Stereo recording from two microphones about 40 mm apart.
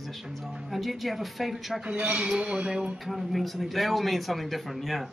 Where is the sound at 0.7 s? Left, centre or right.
Centre.